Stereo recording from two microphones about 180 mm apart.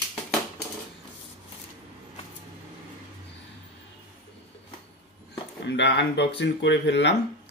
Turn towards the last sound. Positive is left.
turn(degrees=80)